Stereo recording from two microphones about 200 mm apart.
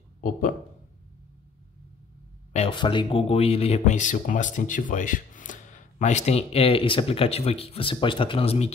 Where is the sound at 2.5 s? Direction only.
25° left (ahead or behind).